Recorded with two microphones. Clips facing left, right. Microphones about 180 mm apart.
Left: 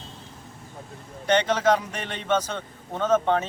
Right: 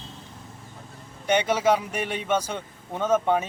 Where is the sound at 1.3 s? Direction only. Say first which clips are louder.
Even; 10° right (ahead or behind).